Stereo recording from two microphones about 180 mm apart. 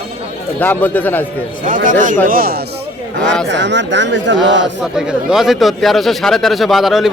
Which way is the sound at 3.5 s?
80° right.